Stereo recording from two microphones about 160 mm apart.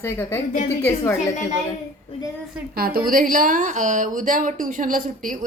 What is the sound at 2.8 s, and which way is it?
A woman's voice, 70° right (ahead or behind).